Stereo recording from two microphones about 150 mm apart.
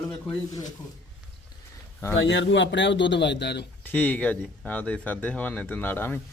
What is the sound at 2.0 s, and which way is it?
Speech, 15° left (ahead or behind).